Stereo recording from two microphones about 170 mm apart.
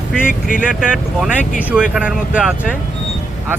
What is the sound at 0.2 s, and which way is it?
Speech, 55° left (ahead or behind).